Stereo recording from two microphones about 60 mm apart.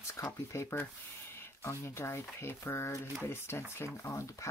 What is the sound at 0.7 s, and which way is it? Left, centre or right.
Speech, left.